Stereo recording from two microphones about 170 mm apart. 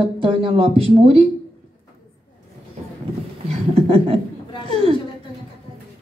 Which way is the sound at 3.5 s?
35° right (ahead or behind).